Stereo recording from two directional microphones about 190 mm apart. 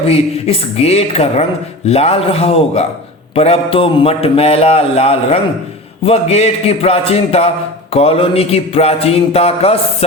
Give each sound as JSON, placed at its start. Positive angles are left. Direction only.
{"t": 0.1, "sound": "a man's voice", "side_deg": 30}